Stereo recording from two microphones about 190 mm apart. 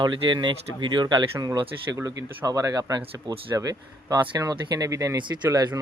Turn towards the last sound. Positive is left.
turn(degrees=-20)  # may be behind; listen again after turning